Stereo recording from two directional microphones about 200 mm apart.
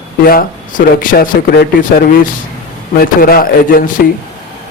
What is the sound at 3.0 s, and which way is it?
Speech, 50° left (ahead or behind).